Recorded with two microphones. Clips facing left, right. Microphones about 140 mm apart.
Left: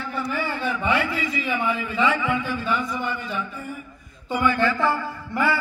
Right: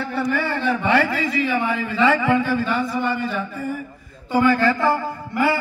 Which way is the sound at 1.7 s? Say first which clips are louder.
Right 2 dB; 75° right (ahead or behind).